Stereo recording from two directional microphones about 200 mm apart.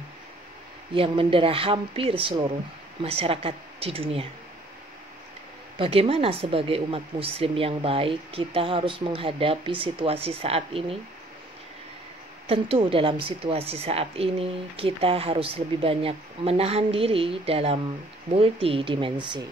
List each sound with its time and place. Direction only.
0.9 s a woman's voice: 25° right (ahead or behind)
5.8 s a woman's voice: 30° right (ahead or behind)
12.4 s a woman's voice: 30° right (ahead or behind)